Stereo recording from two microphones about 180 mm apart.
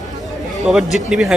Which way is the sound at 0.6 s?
Centre (ahead or behind).